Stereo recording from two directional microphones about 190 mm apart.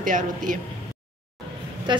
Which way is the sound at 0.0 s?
45° right (ahead or behind).